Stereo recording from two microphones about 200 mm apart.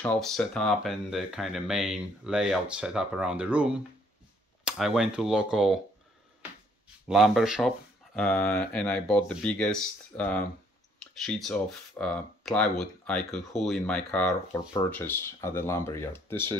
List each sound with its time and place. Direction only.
0.0 s speech: 5° left (ahead or behind)
7.1 s speech: centre (ahead or behind)